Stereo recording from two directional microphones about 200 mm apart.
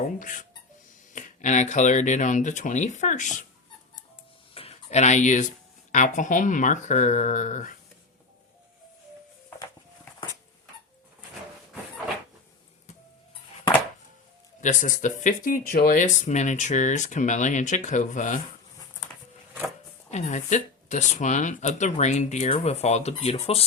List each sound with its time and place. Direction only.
0.2 s speech: 40° left (ahead or behind)
4.5 s a sound: 30° left (ahead or behind)
5.9 s speech: 40° left (ahead or behind)
14.6 s speech: 40° left (ahead or behind)
20.1 s speech: 35° left (ahead or behind)